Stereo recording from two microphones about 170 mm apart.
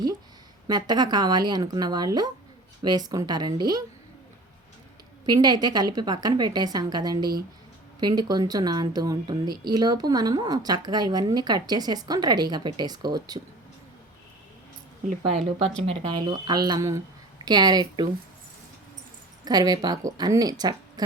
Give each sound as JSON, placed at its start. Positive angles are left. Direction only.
{"t": 0.7, "sound": "a woman's voice", "side_deg": -25}
{"t": 5.2, "sound": "a woman's voice", "side_deg": -25}
{"t": 15.9, "sound": "a woman's voice", "side_deg": -25}
{"t": 19.5, "sound": "a woman's voice", "side_deg": -25}